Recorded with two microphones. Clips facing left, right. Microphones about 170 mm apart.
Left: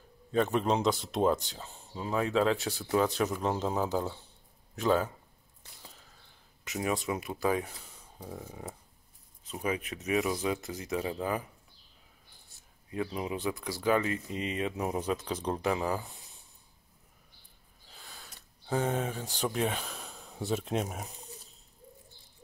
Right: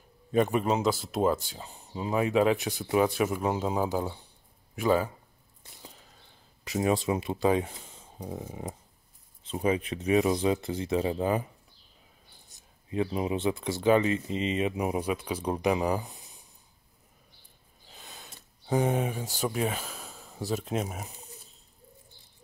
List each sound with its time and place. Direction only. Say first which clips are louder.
0.3 s speech: right 2 dB; 10° right (ahead or behind)
6.6 s speech: right 5 dB; 30° right (ahead or behind)
12.4 s speech: right 7 dB; 20° right (ahead or behind)
17.9 s speech: right 3 dB; 20° right (ahead or behind); by 21.1 s centre (ahead or behind)